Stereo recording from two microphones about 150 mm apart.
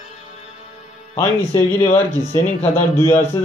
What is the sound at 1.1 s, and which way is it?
Speech, 20° left (ahead or behind).